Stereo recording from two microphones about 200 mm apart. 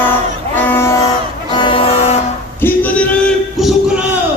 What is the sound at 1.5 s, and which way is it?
Music, 25° left (ahead or behind).